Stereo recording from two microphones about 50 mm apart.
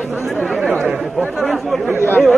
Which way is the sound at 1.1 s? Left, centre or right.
Centre.